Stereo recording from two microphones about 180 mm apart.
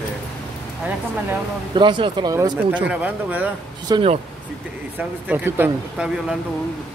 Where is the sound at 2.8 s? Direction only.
10° right (ahead or behind).